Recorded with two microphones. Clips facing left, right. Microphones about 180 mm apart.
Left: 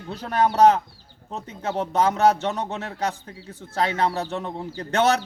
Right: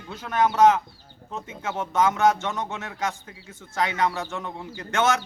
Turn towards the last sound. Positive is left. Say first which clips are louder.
# left 3 dB
turn(degrees=35)  # may be behind; listen again after turning